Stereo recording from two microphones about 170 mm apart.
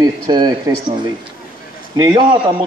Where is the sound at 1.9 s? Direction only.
25° right (ahead or behind).